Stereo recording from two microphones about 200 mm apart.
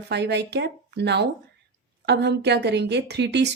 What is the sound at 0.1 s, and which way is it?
A woman's voice, 55° right (ahead or behind).